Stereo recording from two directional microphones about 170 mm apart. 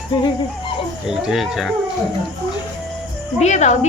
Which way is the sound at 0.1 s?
25° left (ahead or behind).